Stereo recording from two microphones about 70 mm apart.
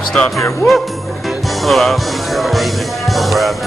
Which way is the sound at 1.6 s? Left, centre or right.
Centre.